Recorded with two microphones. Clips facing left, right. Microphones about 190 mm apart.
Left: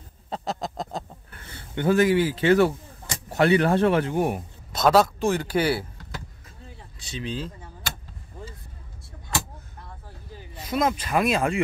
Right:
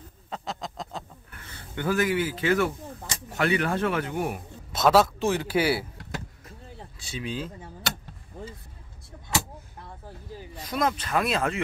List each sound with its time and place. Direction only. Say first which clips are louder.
0.3 s quack: left 5 dB; 40° left (ahead or behind)
3.3 s speech: left 6 dB; 30° left (ahead or behind)
4.7 s a man's voice: left 1 dB; 5° right (ahead or behind)
7.1 s speech: left 1 dB; 10° right (ahead or behind)
10.5 s speech: left 3 dB; 5° left (ahead or behind)